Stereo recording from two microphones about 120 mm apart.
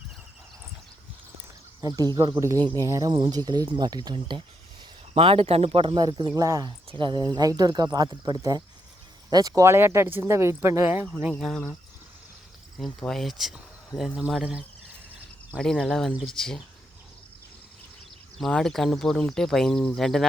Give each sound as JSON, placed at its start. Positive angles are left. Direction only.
{"t": 1.8, "sound": "speech", "side_deg": -30}
{"t": 2.8, "sound": "speech", "side_deg": -30}
{"t": 5.1, "sound": "speech", "side_deg": -55}
{"t": 11.3, "sound": "speech", "side_deg": 0}
{"t": 12.7, "sound": "speech", "side_deg": 0}
{"t": 18.3, "sound": "speech", "side_deg": 5}